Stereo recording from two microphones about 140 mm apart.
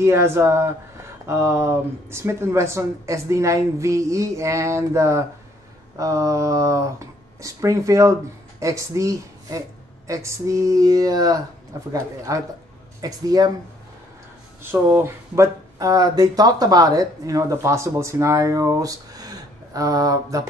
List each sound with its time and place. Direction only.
0.0 s speech: 20° right (ahead or behind)
14.6 s speech: 15° right (ahead or behind)